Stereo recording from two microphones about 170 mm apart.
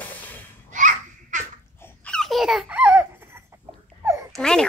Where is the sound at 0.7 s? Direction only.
45° right (ahead or behind).